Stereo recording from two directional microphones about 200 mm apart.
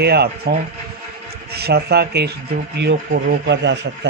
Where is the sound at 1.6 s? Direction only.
55° right (ahead or behind).